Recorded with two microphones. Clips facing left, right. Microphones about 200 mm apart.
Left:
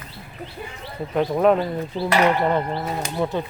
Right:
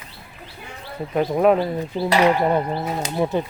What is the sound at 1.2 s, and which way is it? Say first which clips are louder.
Speech: right 1 dB; 5° right (ahead or behind).